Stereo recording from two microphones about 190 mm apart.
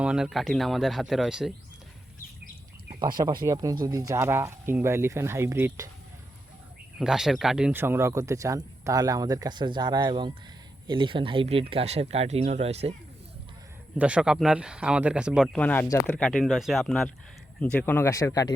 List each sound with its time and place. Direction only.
0.0 s speech: 5° right (ahead or behind)
3.4 s speech: 20° right (ahead or behind)
7.0 s speech: centre (ahead or behind); by 12.9 s 35° right (ahead or behind)
14.0 s speech: 5° right (ahead or behind)
15.5 s speech: 10° left (ahead or behind)
16.1 s speech: 5° left (ahead or behind)